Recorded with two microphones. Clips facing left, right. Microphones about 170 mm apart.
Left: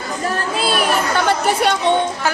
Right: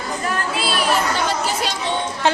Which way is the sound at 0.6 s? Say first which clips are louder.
Left 2 dB; 55° left (ahead or behind).